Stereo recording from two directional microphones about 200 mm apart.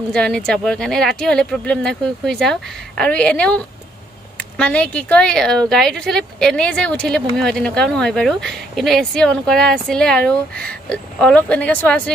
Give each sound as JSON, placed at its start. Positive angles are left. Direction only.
{"t": 0.1, "sound": "speech", "side_deg": 5}